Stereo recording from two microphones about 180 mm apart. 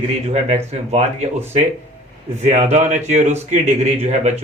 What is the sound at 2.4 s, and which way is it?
A man's voice, 40° right (ahead or behind).